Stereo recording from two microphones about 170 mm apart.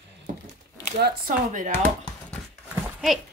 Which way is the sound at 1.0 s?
60° right (ahead or behind).